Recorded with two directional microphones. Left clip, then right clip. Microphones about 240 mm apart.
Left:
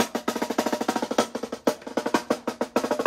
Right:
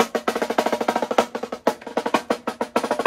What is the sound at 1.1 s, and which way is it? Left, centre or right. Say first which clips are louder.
Percussion: right 4 dB; right.